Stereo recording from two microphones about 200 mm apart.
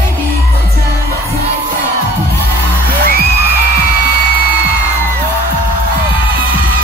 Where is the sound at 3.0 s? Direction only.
50° right (ahead or behind).